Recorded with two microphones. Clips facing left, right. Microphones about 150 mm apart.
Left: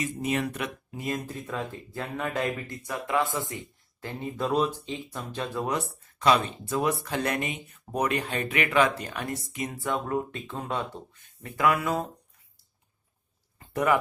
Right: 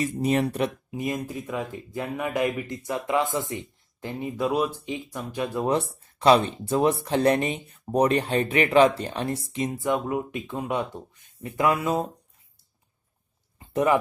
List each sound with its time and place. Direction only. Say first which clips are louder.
0.2 s speech: right 7 dB; 35° right (ahead or behind)
0.9 s speech: right 3 dB; 15° right (ahead or behind)
5.6 s speech: right 6 dB; 30° right (ahead or behind)
9.8 s speech: right 2 dB; 15° right (ahead or behind)
13.6 s a sound: right 3 dB; 20° right (ahead or behind)